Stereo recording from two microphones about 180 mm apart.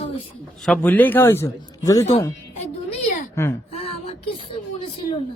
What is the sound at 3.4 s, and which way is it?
Speech, 15° left (ahead or behind).